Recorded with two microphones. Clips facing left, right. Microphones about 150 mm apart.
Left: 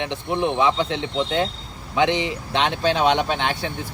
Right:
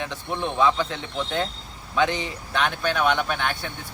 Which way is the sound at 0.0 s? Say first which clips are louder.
Left 5 dB; 20° left (ahead or behind).